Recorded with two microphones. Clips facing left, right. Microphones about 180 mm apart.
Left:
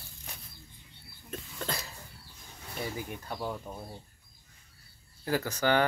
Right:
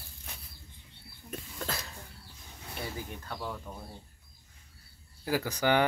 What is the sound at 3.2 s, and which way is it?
Speech, 15° left (ahead or behind).